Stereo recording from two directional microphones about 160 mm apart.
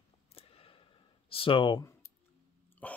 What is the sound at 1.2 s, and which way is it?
Speech, 35° left (ahead or behind).